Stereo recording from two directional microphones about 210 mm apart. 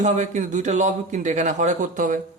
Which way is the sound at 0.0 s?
35° right (ahead or behind).